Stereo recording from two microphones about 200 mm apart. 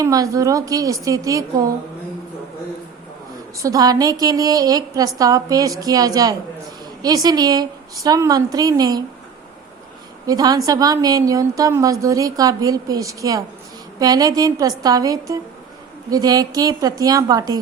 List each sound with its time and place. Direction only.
0.0 s a woman's voice: 15° right (ahead or behind)
3.6 s a woman's voice: 15° right (ahead or behind)
10.2 s a woman's voice: 20° right (ahead or behind)